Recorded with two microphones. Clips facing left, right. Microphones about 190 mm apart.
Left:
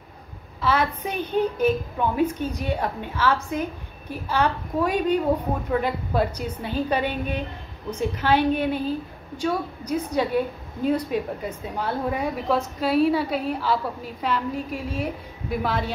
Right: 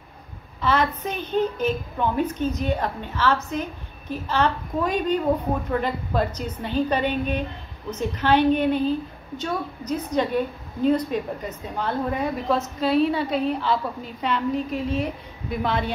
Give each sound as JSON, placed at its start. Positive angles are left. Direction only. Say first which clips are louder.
{"t": 0.6, "sound": "a woman's voice", "louder": "right 1 dB", "side_deg": 10}